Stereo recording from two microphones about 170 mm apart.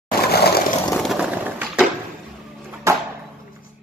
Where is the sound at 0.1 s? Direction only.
70° left (ahead or behind).